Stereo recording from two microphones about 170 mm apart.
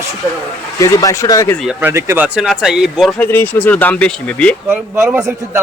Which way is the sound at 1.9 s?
15° right (ahead or behind).